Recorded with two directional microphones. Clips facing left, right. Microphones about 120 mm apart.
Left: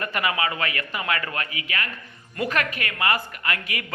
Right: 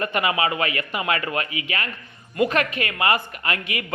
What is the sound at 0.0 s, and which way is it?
A man's voice, 25° right (ahead or behind).